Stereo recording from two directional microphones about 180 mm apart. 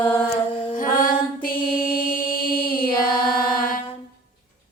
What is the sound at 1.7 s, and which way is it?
Mantra, 55° left (ahead or behind).